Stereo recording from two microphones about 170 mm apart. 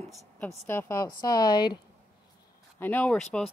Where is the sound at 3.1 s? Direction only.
Centre (ahead or behind).